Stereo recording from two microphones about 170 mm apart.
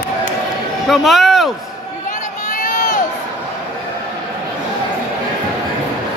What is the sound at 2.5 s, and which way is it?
Crowd, 50° left (ahead or behind).